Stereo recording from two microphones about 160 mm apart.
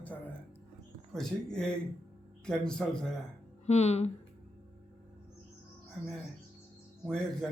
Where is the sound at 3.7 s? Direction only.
45° left (ahead or behind).